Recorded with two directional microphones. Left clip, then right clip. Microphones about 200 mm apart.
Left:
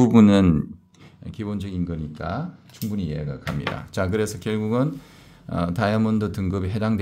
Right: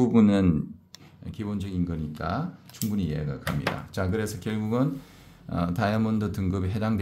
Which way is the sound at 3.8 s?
30° left (ahead or behind).